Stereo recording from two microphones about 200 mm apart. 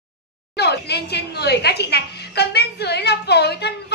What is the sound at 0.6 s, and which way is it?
A woman's voice, 55° left (ahead or behind).